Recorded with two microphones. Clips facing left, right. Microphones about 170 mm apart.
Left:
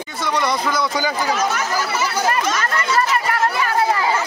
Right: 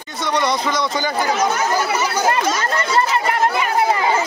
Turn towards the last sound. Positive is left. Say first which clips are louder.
# right 1 dB
turn(degrees=-20)  # may be behind; listen again after turning